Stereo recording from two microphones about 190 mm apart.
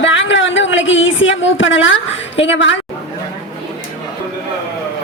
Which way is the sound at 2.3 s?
75° left (ahead or behind).